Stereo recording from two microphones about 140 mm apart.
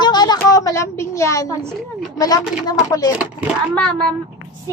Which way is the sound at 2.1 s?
25° left (ahead or behind).